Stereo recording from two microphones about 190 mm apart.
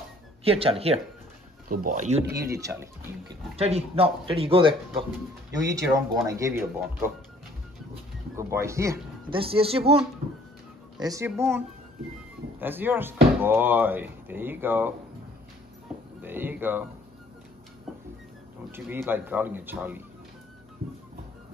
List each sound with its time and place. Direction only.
0.4 s speech: 30° right (ahead or behind)
1.7 s speech: 45° right (ahead or behind)
2.2 s speech: 15° right (ahead or behind)
3.5 s speech: 30° right (ahead or behind)
5.7 s speech: 15° right (ahead or behind)
8.4 s speech: 15° right (ahead or behind)
9.3 s speech: 30° right (ahead or behind)
11.0 s speech: 15° right (ahead or behind)
16.2 s a sound: 10° right (ahead or behind)
18.7 s speech: 10° right (ahead or behind)